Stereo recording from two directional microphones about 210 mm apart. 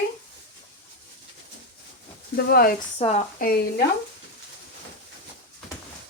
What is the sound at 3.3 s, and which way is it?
Speech, 45° left (ahead or behind).